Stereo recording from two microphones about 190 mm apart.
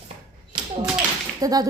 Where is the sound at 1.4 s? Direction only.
20° right (ahead or behind).